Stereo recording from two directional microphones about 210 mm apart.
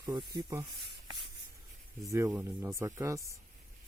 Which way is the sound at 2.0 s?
15° right (ahead or behind).